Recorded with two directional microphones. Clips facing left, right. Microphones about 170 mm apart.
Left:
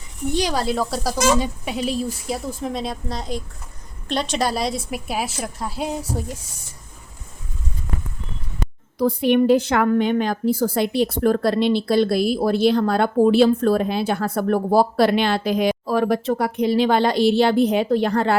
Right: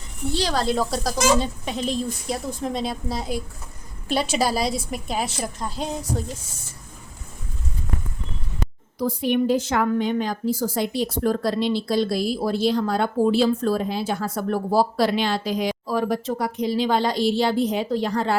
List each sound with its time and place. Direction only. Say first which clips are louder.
0.3 s a woman's voice: left 1 dB; 15° left (ahead or behind)
9.0 s a woman's voice: left 5 dB; 65° left (ahead or behind)